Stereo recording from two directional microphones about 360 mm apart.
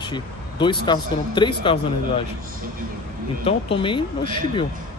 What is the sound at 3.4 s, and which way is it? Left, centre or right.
Speech, centre.